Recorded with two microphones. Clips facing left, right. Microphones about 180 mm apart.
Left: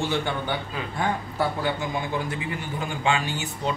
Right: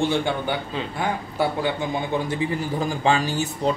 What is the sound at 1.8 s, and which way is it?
A man's voice, 30° right (ahead or behind).